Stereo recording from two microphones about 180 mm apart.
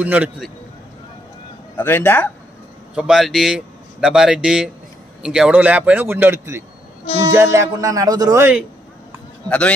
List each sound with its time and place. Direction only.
0.0 s speech: 10° right (ahead or behind)
1.8 s speech: 10° left (ahead or behind)
3.0 s speech: centre (ahead or behind)